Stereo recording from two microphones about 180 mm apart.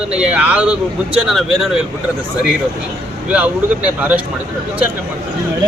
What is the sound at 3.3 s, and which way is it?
Speech, 10° right (ahead or behind).